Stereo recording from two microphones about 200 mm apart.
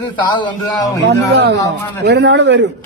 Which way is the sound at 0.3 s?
20° left (ahead or behind).